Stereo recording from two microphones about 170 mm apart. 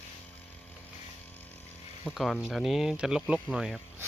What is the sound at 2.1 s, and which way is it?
Speech, 5° right (ahead or behind).